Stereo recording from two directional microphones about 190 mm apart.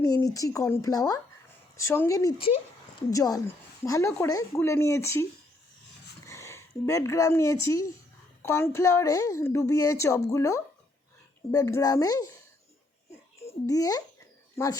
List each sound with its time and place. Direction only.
0.1 s a woman's voice: 20° left (ahead or behind)
6.2 s a woman's voice: 15° left (ahead or behind)
13.7 s speech: 20° left (ahead or behind)